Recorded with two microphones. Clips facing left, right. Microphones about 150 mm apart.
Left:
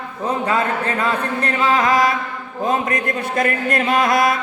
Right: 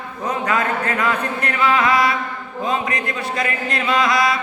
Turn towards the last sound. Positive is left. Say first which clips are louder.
# left 2 dB
turn(degrees=50)  # may be behind; listen again after turning